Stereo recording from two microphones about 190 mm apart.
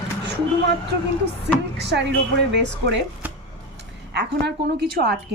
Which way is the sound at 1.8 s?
65° right (ahead or behind).